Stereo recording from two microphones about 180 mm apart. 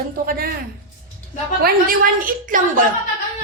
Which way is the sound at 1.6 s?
50° right (ahead or behind).